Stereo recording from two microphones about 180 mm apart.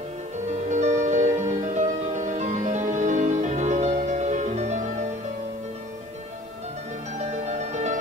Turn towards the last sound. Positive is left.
turn(degrees=-40)  # may be behind; listen again after turning